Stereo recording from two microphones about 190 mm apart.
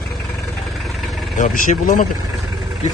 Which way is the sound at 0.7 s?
Centre (ahead or behind).